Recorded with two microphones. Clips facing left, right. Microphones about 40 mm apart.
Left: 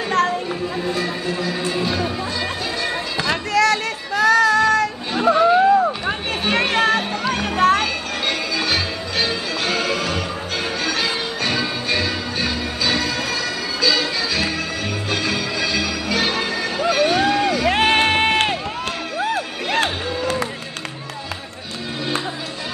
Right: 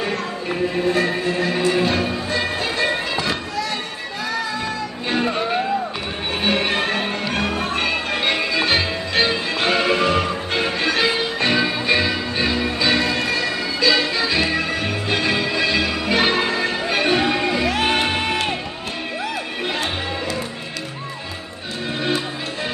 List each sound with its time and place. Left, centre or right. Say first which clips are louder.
0.5 s music: right 3 dB; right
3.5 s child singing: left 8 dB; left
5.2 s music: left 10 dB; centre
6.4 s music: left 3 dB; right
7.5 s music: left 8 dB; left
7.8 s music: right 2 dB; right
17.6 s music: left 3 dB; left